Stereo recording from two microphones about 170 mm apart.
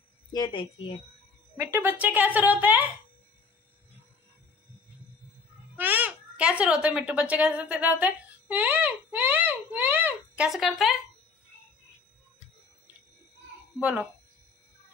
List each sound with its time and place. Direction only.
0.3 s a woman's voice: 25° left (ahead or behind)
1.6 s speech: 10° right (ahead or behind)
5.8 s speech: 10° right (ahead or behind)
13.7 s speech: 10° right (ahead or behind)